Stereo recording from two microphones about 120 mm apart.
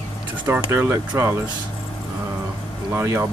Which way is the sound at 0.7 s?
20° right (ahead or behind).